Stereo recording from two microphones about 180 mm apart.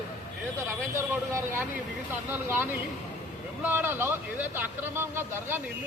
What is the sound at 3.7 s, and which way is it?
Speech, 10° right (ahead or behind).